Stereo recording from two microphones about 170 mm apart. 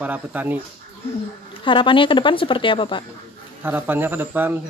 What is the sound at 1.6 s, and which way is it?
Speech, 30° left (ahead or behind).